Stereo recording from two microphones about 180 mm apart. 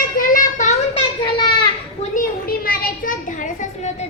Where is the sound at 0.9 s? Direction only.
25° left (ahead or behind).